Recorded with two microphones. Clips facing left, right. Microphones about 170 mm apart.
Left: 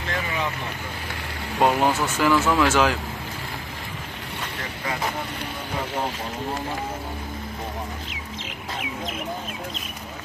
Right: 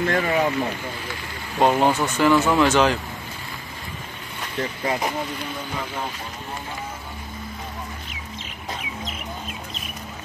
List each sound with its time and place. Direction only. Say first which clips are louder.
0.0 s speech: right 7 dB; 50° right (ahead or behind)
1.6 s speech: right 2 dB; 5° left (ahead or behind)
2.3 s speech: right 1 dB; 15° right (ahead or behind)
2.6 s speech: right 2 dB; 5° left (ahead or behind)